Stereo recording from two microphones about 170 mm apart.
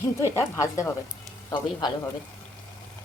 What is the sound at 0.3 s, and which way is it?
Speech, 15° left (ahead or behind).